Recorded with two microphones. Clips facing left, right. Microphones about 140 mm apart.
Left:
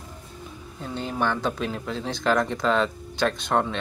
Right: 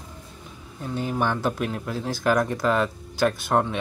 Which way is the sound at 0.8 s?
5° right (ahead or behind).